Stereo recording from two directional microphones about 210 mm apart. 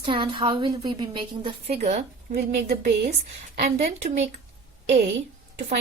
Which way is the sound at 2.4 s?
50° right (ahead or behind).